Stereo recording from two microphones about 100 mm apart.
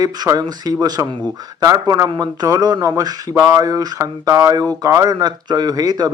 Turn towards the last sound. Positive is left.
turn(degrees=-40)  # may be behind; listen again after turning